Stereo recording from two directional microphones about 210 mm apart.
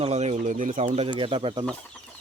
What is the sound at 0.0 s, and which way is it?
Speech, 30° right (ahead or behind).